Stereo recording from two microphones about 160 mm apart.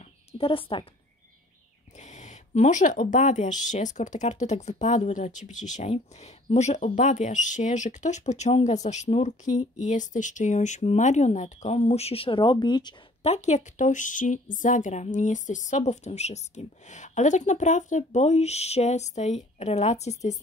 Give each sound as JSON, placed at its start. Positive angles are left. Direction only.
{"t": 0.0, "sound": "a sound", "side_deg": 40}
{"t": 2.0, "sound": "speech", "side_deg": 50}
{"t": 13.2, "sound": "speech", "side_deg": 45}